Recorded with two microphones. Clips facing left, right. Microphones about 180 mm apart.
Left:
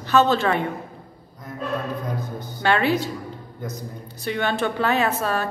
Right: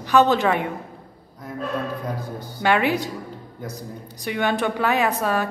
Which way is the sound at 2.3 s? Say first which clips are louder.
Right 1 dB; 15° right (ahead or behind).